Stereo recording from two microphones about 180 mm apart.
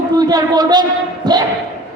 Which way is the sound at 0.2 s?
20° right (ahead or behind).